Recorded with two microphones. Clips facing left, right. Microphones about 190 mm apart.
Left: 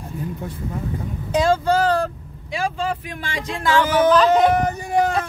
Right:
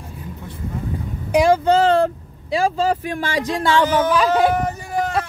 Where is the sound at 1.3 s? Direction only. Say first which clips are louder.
Right 3 dB; 15° right (ahead or behind); by 3.7 s 40° right (ahead or behind).